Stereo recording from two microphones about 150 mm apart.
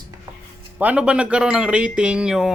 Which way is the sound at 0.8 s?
10° right (ahead or behind).